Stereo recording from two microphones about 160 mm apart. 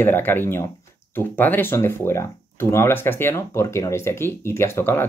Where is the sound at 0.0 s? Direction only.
10° left (ahead or behind).